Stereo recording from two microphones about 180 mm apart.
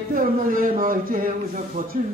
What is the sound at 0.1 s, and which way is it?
A man's voice, 50° right (ahead or behind).